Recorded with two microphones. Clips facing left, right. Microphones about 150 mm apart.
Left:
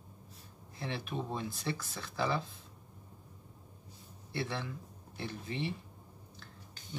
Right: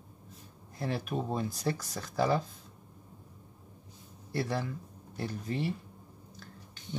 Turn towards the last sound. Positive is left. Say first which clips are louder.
# right 4 dB
turn(degrees=-40)  # may be behind; listen again after turning